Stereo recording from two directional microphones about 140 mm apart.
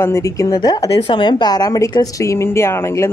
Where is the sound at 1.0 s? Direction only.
35° left (ahead or behind).